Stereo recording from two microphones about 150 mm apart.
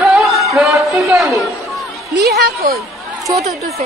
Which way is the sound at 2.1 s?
85° right.